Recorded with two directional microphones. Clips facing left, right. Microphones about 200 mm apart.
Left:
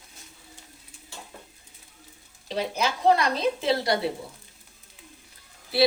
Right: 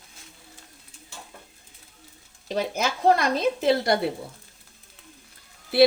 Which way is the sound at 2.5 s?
50° right (ahead or behind).